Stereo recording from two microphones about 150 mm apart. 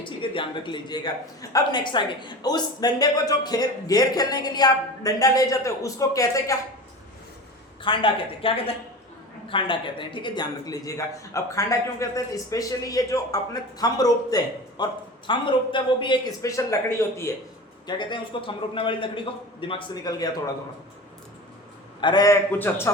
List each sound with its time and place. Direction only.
0.0 s a man's voice: 35° left (ahead or behind)
7.8 s a man's voice: 35° left (ahead or behind); by 17.2 s 20° left (ahead or behind)
17.8 s a man's voice: 30° left (ahead or behind)
22.0 s a man's voice: 25° left (ahead or behind)
22.5 s a man's voice: 15° left (ahead or behind)